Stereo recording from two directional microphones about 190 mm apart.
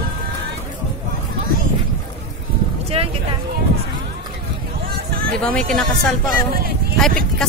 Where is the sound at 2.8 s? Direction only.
30° right (ahead or behind).